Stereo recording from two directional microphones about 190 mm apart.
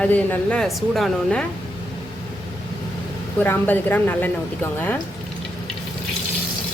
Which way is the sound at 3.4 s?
10° left (ahead or behind).